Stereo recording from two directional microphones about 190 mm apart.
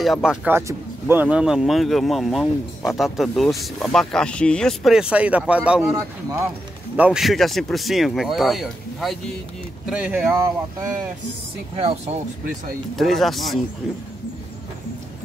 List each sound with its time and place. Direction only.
0.0 s speech: centre (ahead or behind)
7.0 s speech: 5° right (ahead or behind)
11.7 s speech: 30° right (ahead or behind)
12.9 s speech: centre (ahead or behind)